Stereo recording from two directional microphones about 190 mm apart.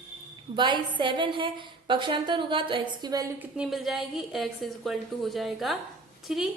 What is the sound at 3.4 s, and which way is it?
A woman's voice, 5° right (ahead or behind).